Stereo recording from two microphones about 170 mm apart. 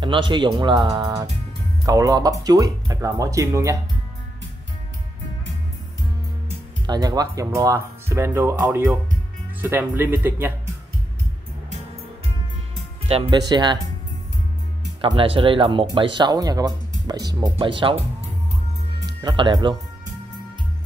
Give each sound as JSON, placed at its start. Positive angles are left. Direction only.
{"t": 0.0, "sound": "speech", "side_deg": -30}
{"t": 6.9, "sound": "speech", "side_deg": -25}
{"t": 13.1, "sound": "speech", "side_deg": -35}
{"t": 15.0, "sound": "speech", "side_deg": -30}